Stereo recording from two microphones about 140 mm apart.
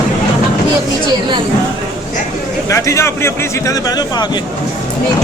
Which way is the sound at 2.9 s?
20° left (ahead or behind).